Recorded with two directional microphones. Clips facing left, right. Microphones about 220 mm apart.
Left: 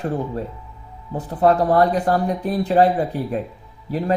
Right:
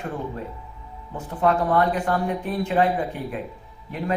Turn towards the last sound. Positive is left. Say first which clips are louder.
# left 6 dB
turn(degrees=35)  # may be behind; listen again after turning